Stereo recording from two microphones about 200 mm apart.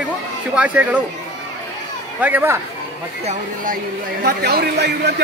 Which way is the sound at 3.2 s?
40° right (ahead or behind).